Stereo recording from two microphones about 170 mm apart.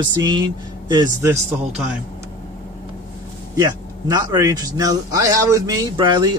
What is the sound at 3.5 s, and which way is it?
A man's voice, 20° right (ahead or behind).